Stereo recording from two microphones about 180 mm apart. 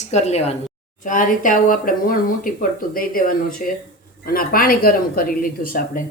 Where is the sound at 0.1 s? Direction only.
35° left (ahead or behind); by 6.0 s 55° left (ahead or behind).